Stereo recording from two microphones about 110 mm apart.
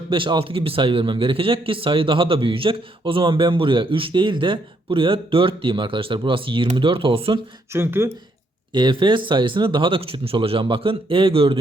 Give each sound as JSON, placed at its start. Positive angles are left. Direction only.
{"t": 0.1, "sound": "a man's voice", "side_deg": -50}
{"t": 7.7, "sound": "speech", "side_deg": -20}
{"t": 8.7, "sound": "a man's voice", "side_deg": -45}